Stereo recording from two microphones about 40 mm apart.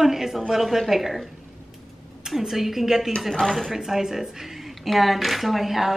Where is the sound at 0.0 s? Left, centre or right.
Centre.